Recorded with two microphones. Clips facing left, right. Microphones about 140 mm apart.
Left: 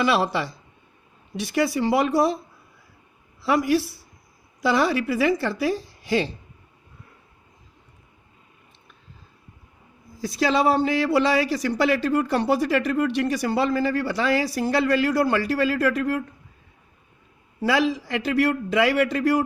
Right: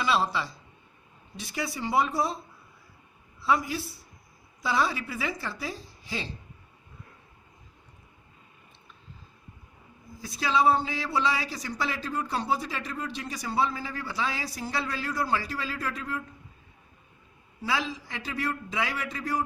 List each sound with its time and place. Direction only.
0.0 s a man's voice: 70° left (ahead or behind)
3.4 s a man's voice: 75° left (ahead or behind)
10.2 s a man's voice: 80° left
17.6 s a man's voice: 75° left (ahead or behind); by 19.5 s 90° left